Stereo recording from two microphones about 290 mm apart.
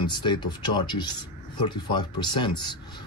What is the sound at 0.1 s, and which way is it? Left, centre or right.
Speech, centre.